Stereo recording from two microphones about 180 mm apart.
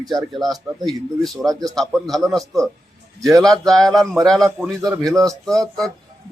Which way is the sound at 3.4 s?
Centre (ahead or behind).